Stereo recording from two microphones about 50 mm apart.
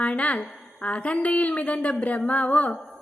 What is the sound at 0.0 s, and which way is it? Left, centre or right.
A woman's voice, left.